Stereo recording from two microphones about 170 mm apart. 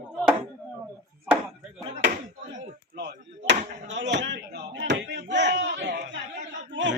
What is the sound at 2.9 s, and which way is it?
Speech, 80° right.